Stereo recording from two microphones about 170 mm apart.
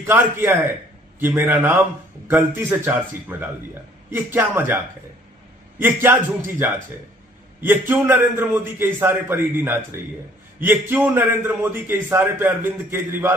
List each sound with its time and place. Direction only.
0.0 s a man's voice: 10° right (ahead or behind)
5.8 s a man's voice: 15° right (ahead or behind)